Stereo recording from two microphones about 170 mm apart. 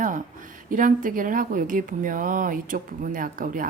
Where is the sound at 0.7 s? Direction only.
50° right (ahead or behind).